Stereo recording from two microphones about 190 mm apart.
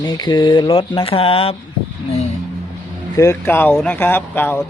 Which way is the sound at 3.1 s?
15° left (ahead or behind).